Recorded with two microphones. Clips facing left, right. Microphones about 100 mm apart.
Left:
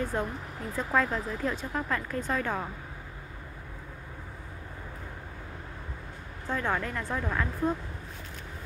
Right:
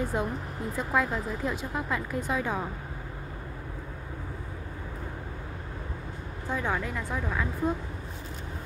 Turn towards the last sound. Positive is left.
turn(degrees=-5)  # may be behind; listen again after turning